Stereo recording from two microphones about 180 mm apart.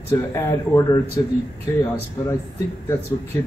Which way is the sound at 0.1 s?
15° left (ahead or behind).